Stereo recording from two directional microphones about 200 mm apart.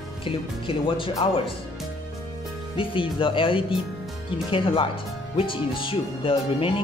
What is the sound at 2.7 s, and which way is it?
Speech, 25° left (ahead or behind).